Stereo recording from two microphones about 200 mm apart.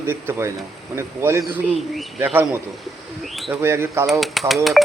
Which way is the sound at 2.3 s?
10° right (ahead or behind).